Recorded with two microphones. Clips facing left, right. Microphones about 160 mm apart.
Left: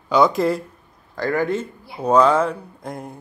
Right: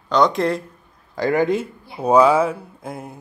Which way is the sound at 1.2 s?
15° right (ahead or behind).